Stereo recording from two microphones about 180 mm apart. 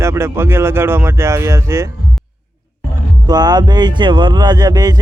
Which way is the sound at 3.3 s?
20° right (ahead or behind).